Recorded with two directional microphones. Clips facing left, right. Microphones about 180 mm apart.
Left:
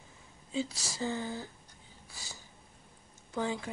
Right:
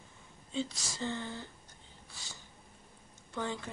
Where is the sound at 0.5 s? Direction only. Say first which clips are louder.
Left 2 dB; 5° left (ahead or behind).